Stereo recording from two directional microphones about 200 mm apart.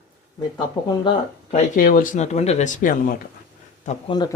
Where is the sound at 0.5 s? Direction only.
25° left (ahead or behind).